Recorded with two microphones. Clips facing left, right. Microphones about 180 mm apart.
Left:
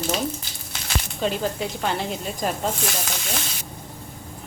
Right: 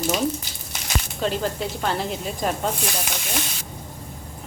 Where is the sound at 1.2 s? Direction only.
Centre (ahead or behind).